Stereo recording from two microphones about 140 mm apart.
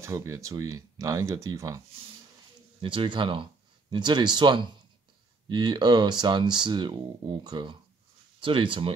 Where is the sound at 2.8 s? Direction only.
35° right (ahead or behind).